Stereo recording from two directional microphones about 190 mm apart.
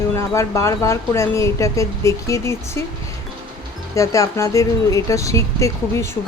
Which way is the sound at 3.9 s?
15° left (ahead or behind).